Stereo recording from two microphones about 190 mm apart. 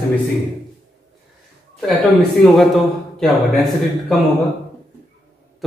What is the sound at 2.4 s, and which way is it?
A man's voice, centre (ahead or behind).